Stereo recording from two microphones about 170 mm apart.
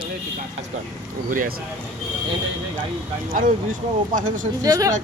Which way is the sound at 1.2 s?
55° right (ahead or behind).